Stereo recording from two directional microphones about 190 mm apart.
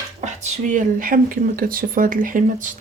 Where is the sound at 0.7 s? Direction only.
45° right (ahead or behind).